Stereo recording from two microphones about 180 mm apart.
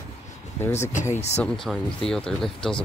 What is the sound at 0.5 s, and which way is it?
Speech, 15° left (ahead or behind).